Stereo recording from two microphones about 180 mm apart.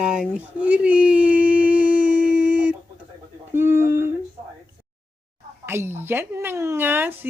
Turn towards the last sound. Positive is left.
turn(degrees=-10)  # may be behind; listen again after turning